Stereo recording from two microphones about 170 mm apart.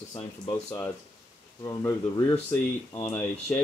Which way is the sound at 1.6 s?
15° left (ahead or behind).